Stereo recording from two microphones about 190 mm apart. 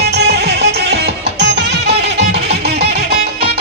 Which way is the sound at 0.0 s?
60° right (ahead or behind).